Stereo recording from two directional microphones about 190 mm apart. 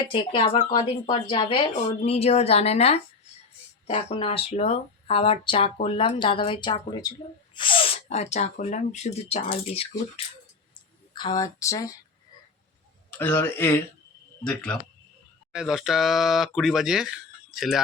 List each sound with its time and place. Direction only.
0.0 s speech: 25° left (ahead or behind)
11.1 s speech: 25° left (ahead or behind)
13.1 s speech: 10° left (ahead or behind)